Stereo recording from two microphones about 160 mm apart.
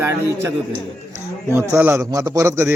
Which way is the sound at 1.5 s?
15° right (ahead or behind).